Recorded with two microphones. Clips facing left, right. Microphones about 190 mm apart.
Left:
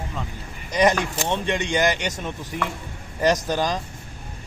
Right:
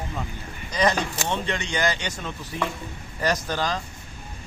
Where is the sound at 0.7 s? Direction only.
20° left (ahead or behind).